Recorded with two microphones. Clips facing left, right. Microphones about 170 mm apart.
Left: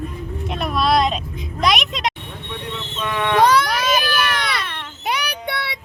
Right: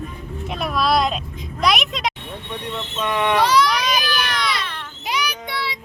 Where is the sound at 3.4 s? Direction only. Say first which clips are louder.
Left 3 dB; 55° left (ahead or behind).